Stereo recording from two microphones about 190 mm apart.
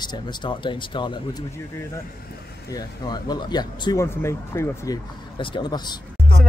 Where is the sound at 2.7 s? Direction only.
20° left (ahead or behind).